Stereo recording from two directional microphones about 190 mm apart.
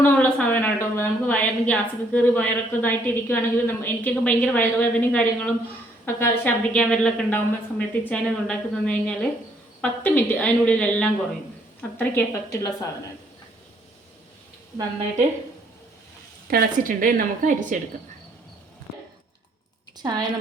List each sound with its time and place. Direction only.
0.0 s a woman's voice: 10° left (ahead or behind)
16.5 s a woman's voice: 50° right (ahead or behind)
20.0 s a woman's voice: 20° right (ahead or behind)